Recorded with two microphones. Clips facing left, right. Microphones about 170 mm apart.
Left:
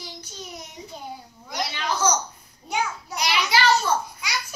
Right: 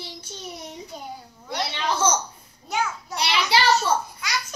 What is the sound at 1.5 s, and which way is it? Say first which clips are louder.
Speech: right 1 dB; 30° right (ahead or behind).